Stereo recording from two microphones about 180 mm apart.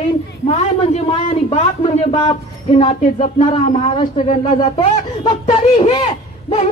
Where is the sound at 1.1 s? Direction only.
30° left (ahead or behind).